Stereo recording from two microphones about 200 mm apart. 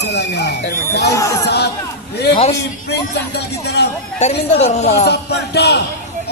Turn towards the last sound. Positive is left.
turn(degrees=55)  # may be behind; listen again after turning